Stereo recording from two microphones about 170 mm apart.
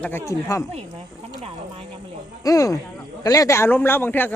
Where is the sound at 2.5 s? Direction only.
20° left (ahead or behind).